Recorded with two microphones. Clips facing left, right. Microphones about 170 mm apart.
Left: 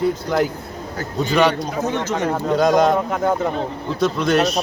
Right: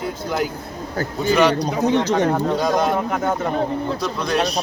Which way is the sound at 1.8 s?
15° right (ahead or behind).